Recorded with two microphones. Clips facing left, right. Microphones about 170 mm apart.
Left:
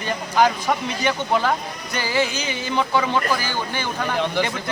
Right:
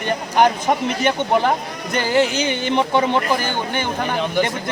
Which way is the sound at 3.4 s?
55° right (ahead or behind).